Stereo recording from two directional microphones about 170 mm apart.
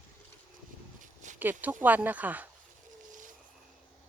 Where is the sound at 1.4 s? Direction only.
10° right (ahead or behind).